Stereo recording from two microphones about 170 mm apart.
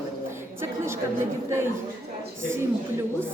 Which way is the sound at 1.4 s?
15° right (ahead or behind).